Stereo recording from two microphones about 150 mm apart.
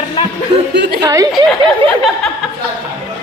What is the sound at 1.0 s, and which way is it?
Speech, 20° right (ahead or behind).